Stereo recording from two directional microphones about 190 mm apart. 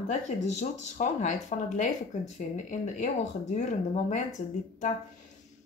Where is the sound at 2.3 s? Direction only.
40° left (ahead or behind).